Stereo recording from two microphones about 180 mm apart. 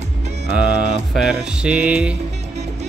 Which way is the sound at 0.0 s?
40° right (ahead or behind).